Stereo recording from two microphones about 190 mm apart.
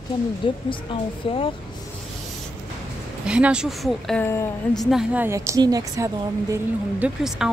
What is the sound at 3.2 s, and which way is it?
Speech, 5° right (ahead or behind).